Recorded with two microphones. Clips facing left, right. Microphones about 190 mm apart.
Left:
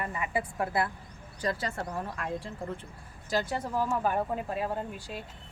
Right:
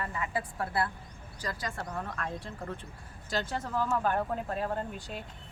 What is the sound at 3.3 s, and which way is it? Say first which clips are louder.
Speech: left 3 dB; 10° left (ahead or behind).